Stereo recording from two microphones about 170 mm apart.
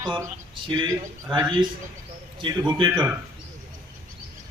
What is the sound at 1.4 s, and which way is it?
Speech, 30° right (ahead or behind).